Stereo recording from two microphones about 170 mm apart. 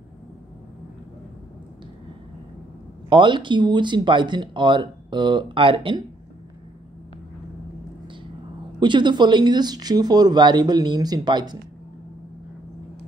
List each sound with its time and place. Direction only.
3.1 s speech: 30° right (ahead or behind)
8.7 s speech: 25° right (ahead or behind)